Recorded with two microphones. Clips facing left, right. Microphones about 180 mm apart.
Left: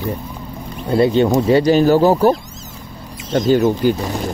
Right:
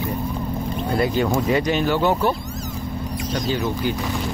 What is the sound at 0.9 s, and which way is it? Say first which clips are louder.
Speech: left 8 dB; 30° left (ahead or behind).